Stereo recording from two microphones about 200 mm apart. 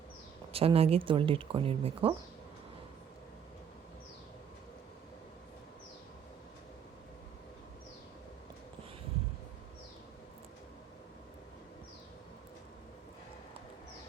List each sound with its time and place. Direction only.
0.5 s speech: 30° right (ahead or behind)